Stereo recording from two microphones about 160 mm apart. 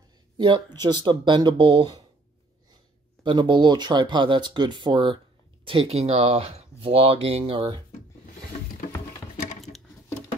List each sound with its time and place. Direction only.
0.7 s speech: 30° right (ahead or behind)
3.3 s speech: 30° right (ahead or behind)